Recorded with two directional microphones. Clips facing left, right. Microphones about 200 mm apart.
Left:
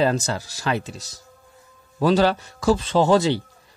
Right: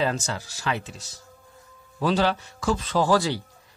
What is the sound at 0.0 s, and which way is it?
A man's voice, 35° left (ahead or behind).